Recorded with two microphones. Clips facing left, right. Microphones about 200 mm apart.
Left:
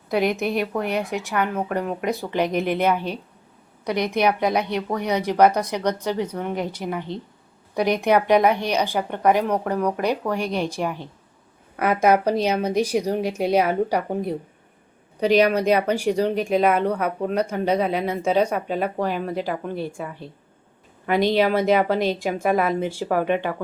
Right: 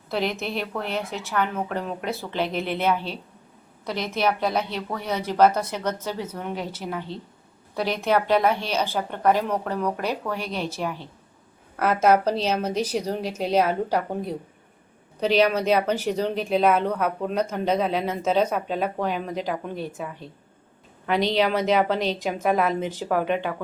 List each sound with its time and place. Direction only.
0.1 s speech: 15° left (ahead or behind)
21.1 s speech: 10° left (ahead or behind)